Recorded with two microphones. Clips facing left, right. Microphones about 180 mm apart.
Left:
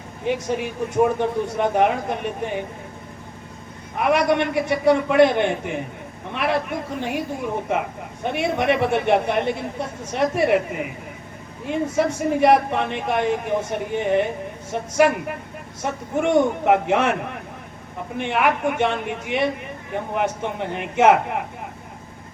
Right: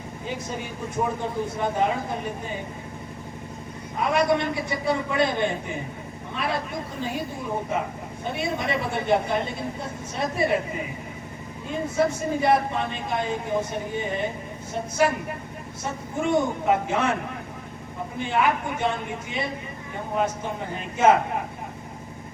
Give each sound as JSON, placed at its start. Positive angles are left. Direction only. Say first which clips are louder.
{"t": 0.3, "sound": "a man's voice", "louder": "left 9 dB", "side_deg": 75}
{"t": 3.9, "sound": "a man's voice", "louder": "left 3 dB", "side_deg": 70}
{"t": 8.2, "sound": "a man's voice", "louder": "left 6 dB", "side_deg": 75}
{"t": 18.2, "sound": "a man's voice", "louder": "left 3 dB", "side_deg": 75}